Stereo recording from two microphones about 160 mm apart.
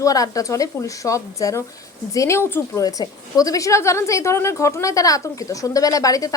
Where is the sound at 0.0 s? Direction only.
20° left (ahead or behind).